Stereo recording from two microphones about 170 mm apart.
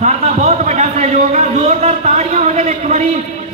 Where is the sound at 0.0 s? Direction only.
40° right (ahead or behind).